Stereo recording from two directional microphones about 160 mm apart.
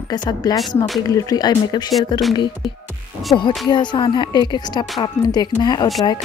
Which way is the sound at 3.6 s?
30° left (ahead or behind).